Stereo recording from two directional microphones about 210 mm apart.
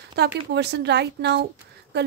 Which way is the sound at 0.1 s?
50° right (ahead or behind).